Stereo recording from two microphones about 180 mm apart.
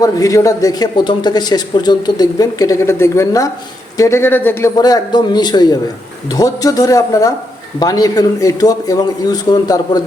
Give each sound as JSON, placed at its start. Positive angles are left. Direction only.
{"t": 0.0, "sound": "a man's voice", "side_deg": 20}